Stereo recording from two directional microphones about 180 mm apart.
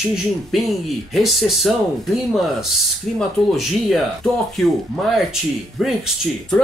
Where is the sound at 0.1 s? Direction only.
Centre (ahead or behind).